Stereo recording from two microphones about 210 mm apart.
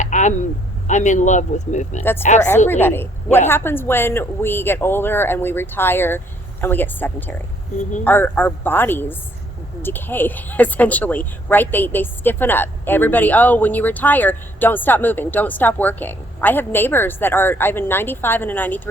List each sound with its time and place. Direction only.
0.0 s a sound: 35° left (ahead or behind)
0.9 s speech: 35° left (ahead or behind)
2.6 s a woman's voice: 10° left (ahead or behind)